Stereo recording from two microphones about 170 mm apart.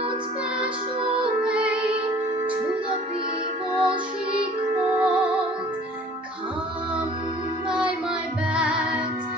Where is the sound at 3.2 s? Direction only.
30° right (ahead or behind).